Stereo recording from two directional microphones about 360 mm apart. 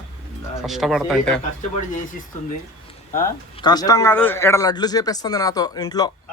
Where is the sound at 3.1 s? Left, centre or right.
Centre.